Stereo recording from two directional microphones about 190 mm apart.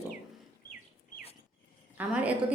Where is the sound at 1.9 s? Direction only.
5° right (ahead or behind).